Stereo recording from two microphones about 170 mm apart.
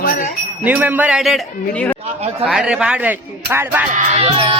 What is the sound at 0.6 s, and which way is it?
Speech, 10° right (ahead or behind).